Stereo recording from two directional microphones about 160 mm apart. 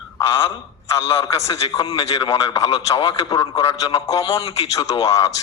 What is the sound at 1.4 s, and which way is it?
A man's voice, 20° left (ahead or behind).